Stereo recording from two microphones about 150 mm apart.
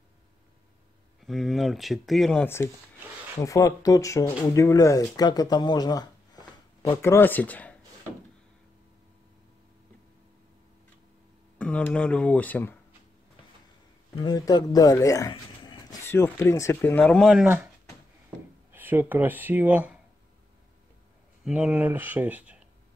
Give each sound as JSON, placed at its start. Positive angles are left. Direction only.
{"t": 1.2, "sound": "speech", "side_deg": 0}
{"t": 2.4, "sound": "speech", "side_deg": 15}
{"t": 11.5, "sound": "speech", "side_deg": 10}
{"t": 14.2, "sound": "speech", "side_deg": 30}
{"t": 16.1, "sound": "speech", "side_deg": 15}
{"t": 18.7, "sound": "speech", "side_deg": -15}
{"t": 21.5, "sound": "speech", "side_deg": -5}